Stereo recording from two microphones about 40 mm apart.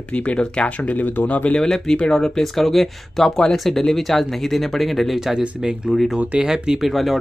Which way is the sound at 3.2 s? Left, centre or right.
Centre.